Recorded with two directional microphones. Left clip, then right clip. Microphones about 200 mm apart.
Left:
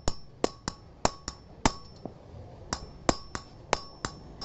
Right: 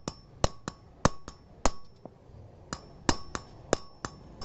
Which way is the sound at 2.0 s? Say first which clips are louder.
Left 5 dB; 15° right (ahead or behind).